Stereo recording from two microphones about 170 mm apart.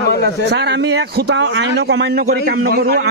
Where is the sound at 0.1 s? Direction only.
70° left (ahead or behind).